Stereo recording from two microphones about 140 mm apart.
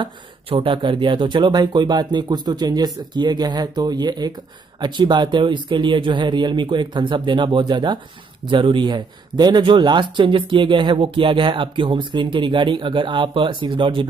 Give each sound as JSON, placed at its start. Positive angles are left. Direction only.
{"t": 0.0, "sound": "speech", "side_deg": -40}